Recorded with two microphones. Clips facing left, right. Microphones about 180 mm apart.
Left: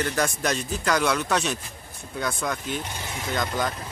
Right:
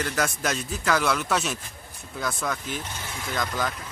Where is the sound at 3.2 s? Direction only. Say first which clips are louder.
Left 2 dB; 20° left (ahead or behind).